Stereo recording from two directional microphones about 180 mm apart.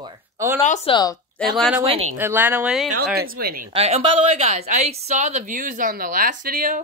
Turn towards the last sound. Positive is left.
turn(degrees=-50)  # may be behind; listen again after turning